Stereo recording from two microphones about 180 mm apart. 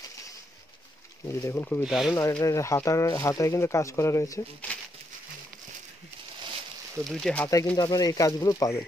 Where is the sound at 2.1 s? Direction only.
15° left (ahead or behind).